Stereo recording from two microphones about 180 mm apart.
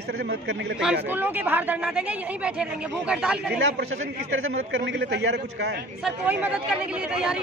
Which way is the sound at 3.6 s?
90° right.